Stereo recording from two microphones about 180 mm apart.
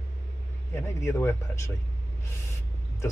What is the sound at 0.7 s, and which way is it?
Speech, 15° left (ahead or behind).